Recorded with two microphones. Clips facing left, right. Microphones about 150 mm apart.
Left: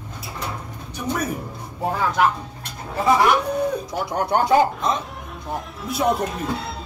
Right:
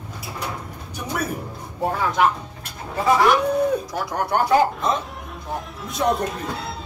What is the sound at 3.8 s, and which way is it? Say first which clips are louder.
Speech: left 1 dB; 25° left (ahead or behind).